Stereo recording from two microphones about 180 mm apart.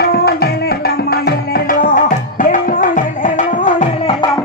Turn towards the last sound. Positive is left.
turn(degrees=45)  # may be behind; listen again after turning